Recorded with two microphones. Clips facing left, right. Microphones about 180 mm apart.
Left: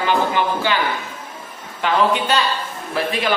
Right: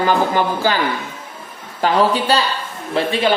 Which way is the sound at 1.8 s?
35° right (ahead or behind).